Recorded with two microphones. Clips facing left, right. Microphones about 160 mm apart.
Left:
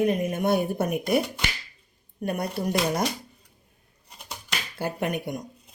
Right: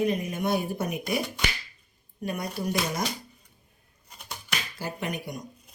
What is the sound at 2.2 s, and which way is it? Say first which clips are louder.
Speech: left 3 dB; 55° left (ahead or behind).